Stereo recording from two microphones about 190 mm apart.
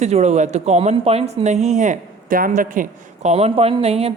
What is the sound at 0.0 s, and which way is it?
Speech, 35° right (ahead or behind).